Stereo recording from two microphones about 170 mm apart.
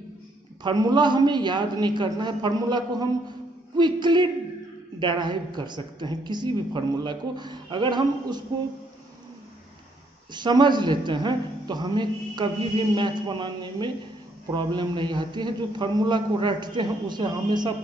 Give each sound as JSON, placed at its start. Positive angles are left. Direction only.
{"t": 0.7, "sound": "a man's voice", "side_deg": -25}
{"t": 10.3, "sound": "a man's voice", "side_deg": -25}